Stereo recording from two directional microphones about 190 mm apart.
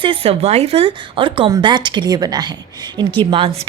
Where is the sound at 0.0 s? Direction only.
30° right (ahead or behind).